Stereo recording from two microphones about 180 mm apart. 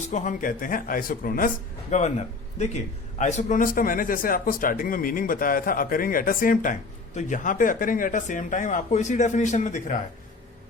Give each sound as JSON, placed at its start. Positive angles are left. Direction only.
{"t": 0.1, "sound": "a man's voice", "side_deg": 45}
{"t": 1.9, "sound": "a man's voice", "side_deg": 40}